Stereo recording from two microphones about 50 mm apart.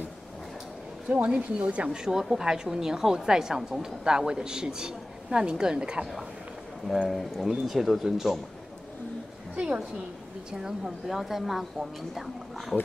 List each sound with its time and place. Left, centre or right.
1.0 s speech: right
1.9 s a woman's voice: centre
7.1 s speech: centre
11.1 s speech: centre